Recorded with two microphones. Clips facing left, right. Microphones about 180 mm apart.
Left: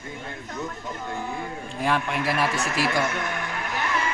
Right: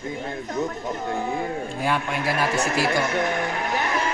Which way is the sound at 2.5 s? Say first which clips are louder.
Right 3 dB; 35° right (ahead or behind).